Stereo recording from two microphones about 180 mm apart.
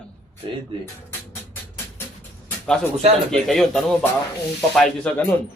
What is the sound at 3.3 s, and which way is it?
Speech, centre (ahead or behind).